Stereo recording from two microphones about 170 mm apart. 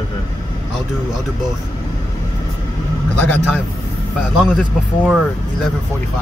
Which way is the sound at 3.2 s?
5° left (ahead or behind).